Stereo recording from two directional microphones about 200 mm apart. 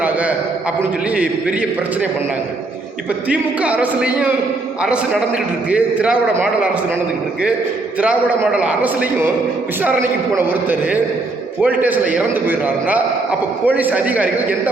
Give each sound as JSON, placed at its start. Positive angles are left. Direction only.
{"t": 0.8, "sound": "a man's voice", "side_deg": -5}
{"t": 3.2, "sound": "a man's voice", "side_deg": -5}
{"t": 5.7, "sound": "a man's voice", "side_deg": -5}
{"t": 8.0, "sound": "a man's voice", "side_deg": -5}
{"t": 10.3, "sound": "a man's voice", "side_deg": -10}